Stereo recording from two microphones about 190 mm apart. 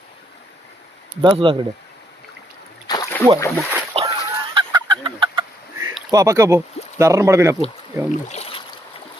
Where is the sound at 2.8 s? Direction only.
20° left (ahead or behind).